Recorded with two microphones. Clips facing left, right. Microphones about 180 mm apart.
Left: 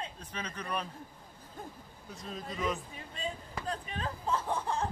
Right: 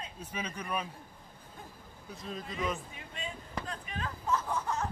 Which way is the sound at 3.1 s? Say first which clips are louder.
Left 1 dB; 35° left (ahead or behind).